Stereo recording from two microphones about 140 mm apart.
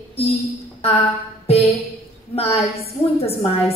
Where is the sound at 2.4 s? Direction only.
45° left (ahead or behind).